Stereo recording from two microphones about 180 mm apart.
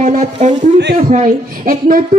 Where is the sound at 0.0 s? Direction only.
40° right (ahead or behind).